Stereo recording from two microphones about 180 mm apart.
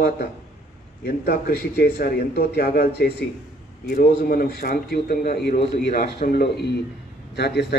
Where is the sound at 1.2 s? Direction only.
60° left (ahead or behind).